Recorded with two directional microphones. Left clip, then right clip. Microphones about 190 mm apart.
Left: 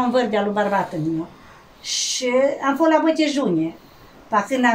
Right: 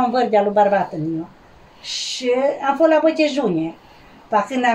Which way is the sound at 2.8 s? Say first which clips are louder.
Right 3 dB; 20° left (ahead or behind).